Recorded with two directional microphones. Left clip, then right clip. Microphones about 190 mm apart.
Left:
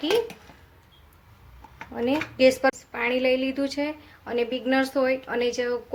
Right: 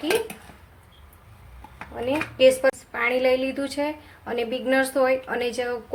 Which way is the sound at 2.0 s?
25° left (ahead or behind).